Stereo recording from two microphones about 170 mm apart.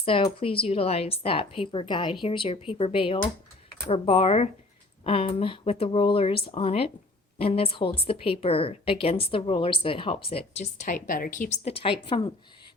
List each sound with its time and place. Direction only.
0.0 s a woman's voice: 35° left (ahead or behind)